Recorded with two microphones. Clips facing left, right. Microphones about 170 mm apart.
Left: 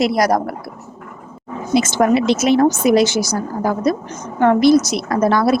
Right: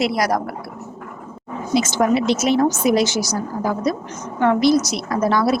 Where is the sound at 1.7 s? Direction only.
60° left (ahead or behind).